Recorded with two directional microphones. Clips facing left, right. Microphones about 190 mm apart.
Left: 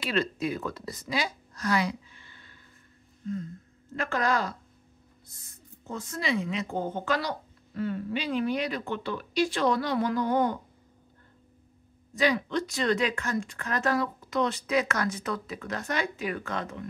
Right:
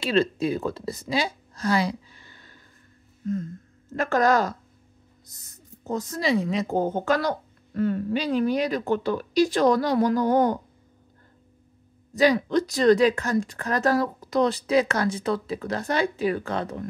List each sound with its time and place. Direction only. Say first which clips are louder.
0.0 s a woman's voice: right 6 dB; 30° right (ahead or behind)
3.9 s speech: right 7 dB; 45° right (ahead or behind)
12.2 s speech: right 6 dB; 40° right (ahead or behind)